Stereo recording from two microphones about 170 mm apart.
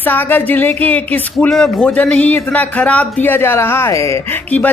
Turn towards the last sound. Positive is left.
turn(degrees=15)  # may be behind; listen again after turning